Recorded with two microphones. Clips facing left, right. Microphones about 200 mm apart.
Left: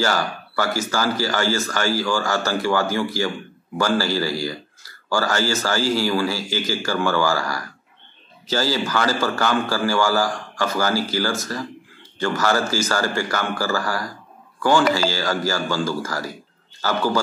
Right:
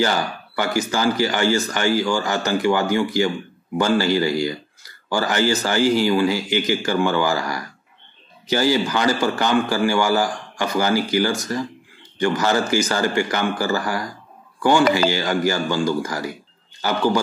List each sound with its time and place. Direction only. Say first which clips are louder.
0.0 s a man's voice: right 1 dB; 20° right (ahead or behind)